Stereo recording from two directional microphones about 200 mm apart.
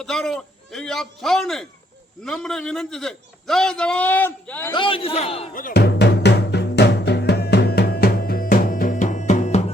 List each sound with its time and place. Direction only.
0.0 s a man's voice: centre (ahead or behind)
4.7 s a man's voice: 25° left (ahead or behind)
5.5 s drum: 50° left (ahead or behind); by 9.7 s 35° left (ahead or behind)